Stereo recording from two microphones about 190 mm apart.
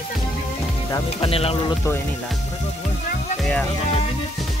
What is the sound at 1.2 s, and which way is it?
Speech, 30° left (ahead or behind).